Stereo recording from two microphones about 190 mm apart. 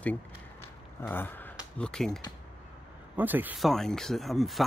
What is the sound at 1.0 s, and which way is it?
Speech, 10° left (ahead or behind).